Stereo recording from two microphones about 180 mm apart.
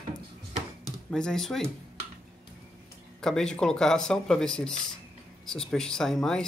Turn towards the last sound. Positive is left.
turn(degrees=5)  # may be behind; listen again after turning